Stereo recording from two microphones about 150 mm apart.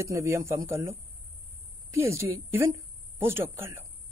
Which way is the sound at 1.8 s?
20° right (ahead or behind).